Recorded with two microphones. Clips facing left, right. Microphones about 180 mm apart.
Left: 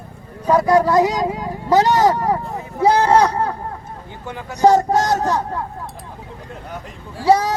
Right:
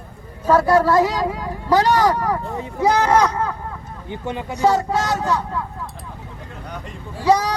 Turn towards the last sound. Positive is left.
turn(degrees=25)  # may be behind; listen again after turning